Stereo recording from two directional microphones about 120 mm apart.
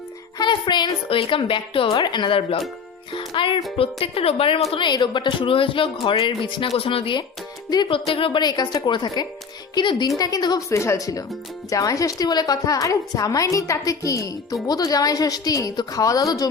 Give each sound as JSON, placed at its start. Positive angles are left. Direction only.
{"t": 0.3, "sound": "a woman's voice", "side_deg": 40}